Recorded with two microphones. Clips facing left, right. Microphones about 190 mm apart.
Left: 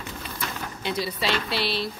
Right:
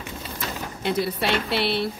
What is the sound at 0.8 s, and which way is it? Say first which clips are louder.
A woman's voice: right 4 dB; 60° right (ahead or behind).